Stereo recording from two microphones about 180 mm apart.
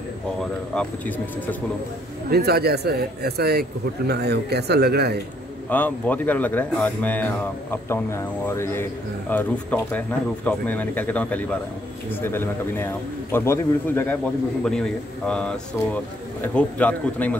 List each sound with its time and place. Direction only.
0.4 s speech: 5° left (ahead or behind)
2.2 s a man's voice: 60° right (ahead or behind)
5.7 s speech: 10° left (ahead or behind)